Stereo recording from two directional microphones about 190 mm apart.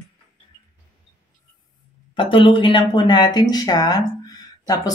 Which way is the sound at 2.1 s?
25° left (ahead or behind).